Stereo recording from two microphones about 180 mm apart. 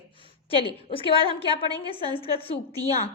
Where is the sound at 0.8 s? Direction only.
30° left (ahead or behind).